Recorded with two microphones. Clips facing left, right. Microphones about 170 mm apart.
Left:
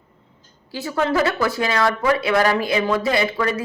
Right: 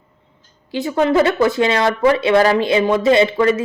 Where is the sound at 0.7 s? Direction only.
20° right (ahead or behind).